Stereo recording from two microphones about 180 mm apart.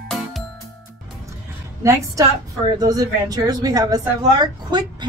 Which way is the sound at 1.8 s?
15° right (ahead or behind).